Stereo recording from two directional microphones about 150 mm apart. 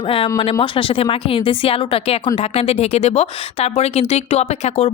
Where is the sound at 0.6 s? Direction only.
35° left (ahead or behind).